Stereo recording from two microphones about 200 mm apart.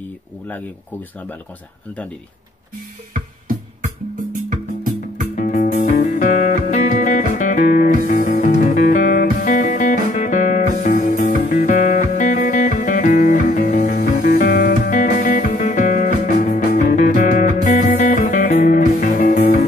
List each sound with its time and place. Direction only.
5.3 s music: 40° left (ahead or behind)